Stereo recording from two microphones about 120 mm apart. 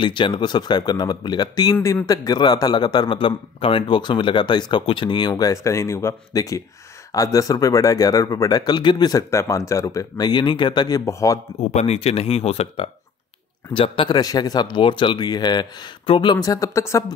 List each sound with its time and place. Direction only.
0.0 s speech: 40° left (ahead or behind)
5.3 s speech: 25° left (ahead or behind)
11.1 s speech: 25° left (ahead or behind)
11.7 s speech: 65° left (ahead or behind); by 17.0 s 25° left (ahead or behind)